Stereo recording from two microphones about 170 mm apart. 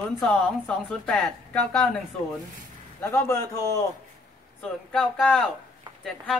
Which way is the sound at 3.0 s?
15° left (ahead or behind).